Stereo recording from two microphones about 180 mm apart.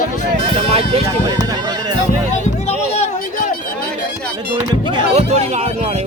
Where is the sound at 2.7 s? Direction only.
35° left (ahead or behind).